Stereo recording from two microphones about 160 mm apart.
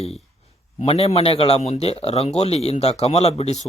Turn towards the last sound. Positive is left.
turn(degrees=40)  # may be behind; listen again after turning